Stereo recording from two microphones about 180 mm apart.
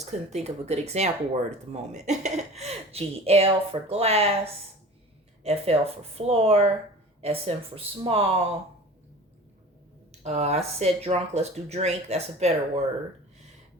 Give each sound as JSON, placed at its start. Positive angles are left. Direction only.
{"t": 0.0, "sound": "speech", "side_deg": -40}
{"t": 5.4, "sound": "speech", "side_deg": -35}
{"t": 10.1, "sound": "speech", "side_deg": -35}